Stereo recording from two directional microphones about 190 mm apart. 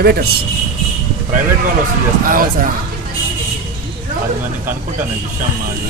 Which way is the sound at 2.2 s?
45° right (ahead or behind).